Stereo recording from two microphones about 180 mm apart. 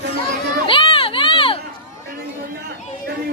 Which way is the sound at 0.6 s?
30° left (ahead or behind).